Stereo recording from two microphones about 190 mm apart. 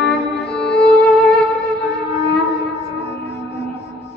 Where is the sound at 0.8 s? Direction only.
5° left (ahead or behind).